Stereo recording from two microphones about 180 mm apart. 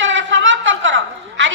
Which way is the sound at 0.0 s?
90° right.